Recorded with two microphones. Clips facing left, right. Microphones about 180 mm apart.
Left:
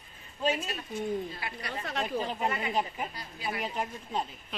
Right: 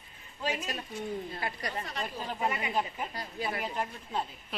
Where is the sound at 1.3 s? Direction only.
40° right (ahead or behind).